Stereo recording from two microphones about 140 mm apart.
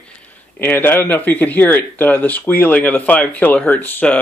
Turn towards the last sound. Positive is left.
turn(degrees=10)  # may be behind; listen again after turning